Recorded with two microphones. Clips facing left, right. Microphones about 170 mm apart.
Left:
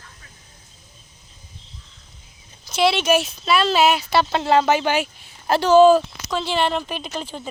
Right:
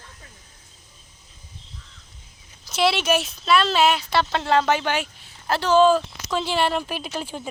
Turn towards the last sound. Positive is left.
turn(degrees=-10)  # may be behind; listen again after turning